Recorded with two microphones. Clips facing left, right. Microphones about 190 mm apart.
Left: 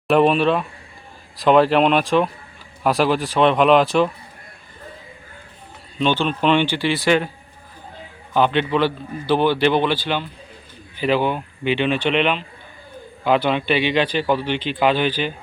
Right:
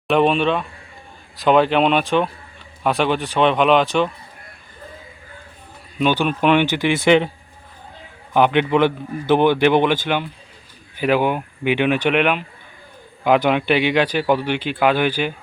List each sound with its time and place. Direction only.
0.1 s speech: centre (ahead or behind)
6.0 s speech: 10° right (ahead or behind)
8.3 s speech: 15° right (ahead or behind)